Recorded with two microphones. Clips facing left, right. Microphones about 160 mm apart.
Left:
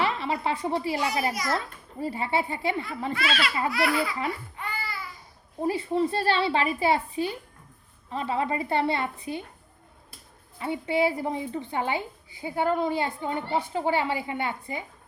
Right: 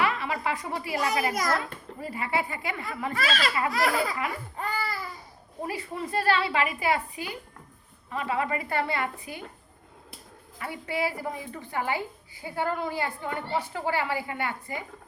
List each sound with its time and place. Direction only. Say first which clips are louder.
0.0 s a woman's voice: left 1 dB; 30° left (ahead or behind)
1.3 s a child's voice: right 2 dB; 50° right (ahead or behind)
1.5 s a woman's voice: left 1 dB; 30° left (ahead or behind)
3.2 s laughter: right 1 dB; 40° right (ahead or behind)
4.5 s baby cry: right 4 dB; 40° right (ahead or behind)
5.6 s a woman's voice: left 9 dB; 30° left (ahead or behind)
10.6 s a woman's voice: left 5 dB; 25° left (ahead or behind)